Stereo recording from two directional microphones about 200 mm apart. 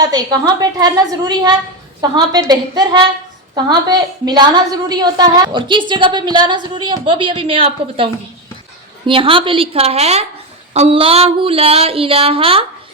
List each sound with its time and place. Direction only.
0.0 s a woman's voice: 20° right (ahead or behind)